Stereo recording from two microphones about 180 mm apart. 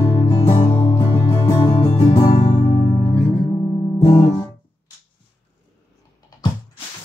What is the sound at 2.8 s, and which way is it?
Music, 20° left (ahead or behind).